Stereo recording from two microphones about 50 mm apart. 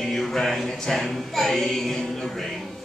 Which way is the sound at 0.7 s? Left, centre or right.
Centre.